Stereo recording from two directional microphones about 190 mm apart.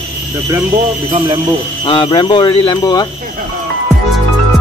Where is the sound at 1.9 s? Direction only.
25° left (ahead or behind).